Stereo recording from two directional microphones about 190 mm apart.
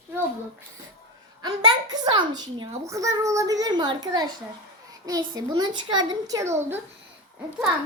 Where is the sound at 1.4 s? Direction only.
20° right (ahead or behind).